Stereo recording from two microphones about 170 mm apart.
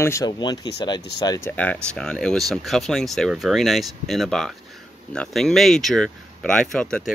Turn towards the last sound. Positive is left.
turn(degrees=5)  # may be behind; listen again after turning